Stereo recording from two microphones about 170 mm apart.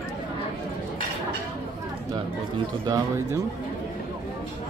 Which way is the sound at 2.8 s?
20° right (ahead or behind).